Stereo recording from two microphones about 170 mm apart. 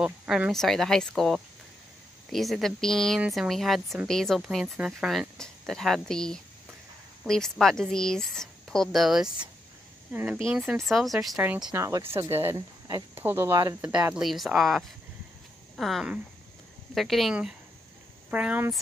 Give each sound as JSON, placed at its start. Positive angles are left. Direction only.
{"t": 0.0, "sound": "speech", "side_deg": -5}
{"t": 13.7, "sound": "speech", "side_deg": -10}